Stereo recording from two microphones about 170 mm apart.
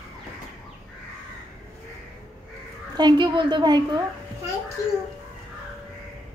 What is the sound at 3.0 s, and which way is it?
A woman's voice, 25° right (ahead or behind).